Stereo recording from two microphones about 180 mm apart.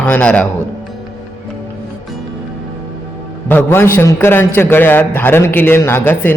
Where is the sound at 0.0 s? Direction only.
5° left (ahead or behind).